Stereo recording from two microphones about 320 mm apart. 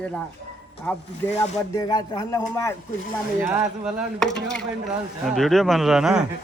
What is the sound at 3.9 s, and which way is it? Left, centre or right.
A man's voice, centre.